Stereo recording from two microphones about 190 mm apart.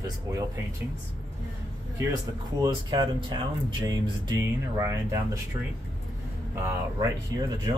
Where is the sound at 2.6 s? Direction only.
25° right (ahead or behind).